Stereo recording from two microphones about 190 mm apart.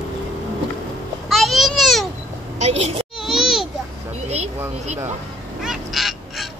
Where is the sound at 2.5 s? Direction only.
35° right (ahead or behind).